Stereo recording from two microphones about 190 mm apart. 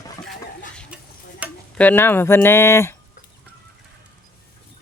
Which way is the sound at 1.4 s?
10° right (ahead or behind).